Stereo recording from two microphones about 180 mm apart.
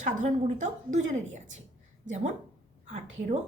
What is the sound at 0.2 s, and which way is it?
A woman's voice, 45° right (ahead or behind).